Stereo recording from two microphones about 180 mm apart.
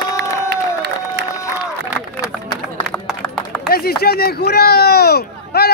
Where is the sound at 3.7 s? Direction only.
60° left (ahead or behind).